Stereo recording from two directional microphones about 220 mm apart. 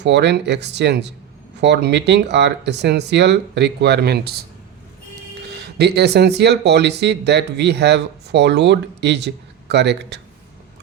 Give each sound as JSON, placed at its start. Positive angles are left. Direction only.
{"t": 0.0, "sound": "speech", "side_deg": -50}
{"t": 5.6, "sound": "speech", "side_deg": -50}